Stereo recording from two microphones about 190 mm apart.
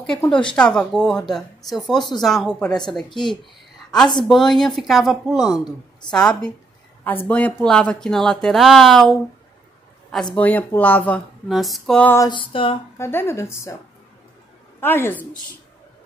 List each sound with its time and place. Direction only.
0.3 s a sound: 25° left (ahead or behind)
0.6 s speech: 5° left (ahead or behind)
4.2 s speech: centre (ahead or behind)
10.3 s speech: 10° left (ahead or behind)
12.3 s a sound: 25° left (ahead or behind)
12.9 s speech: 10° left (ahead or behind)
14.8 s speech: 10° left (ahead or behind)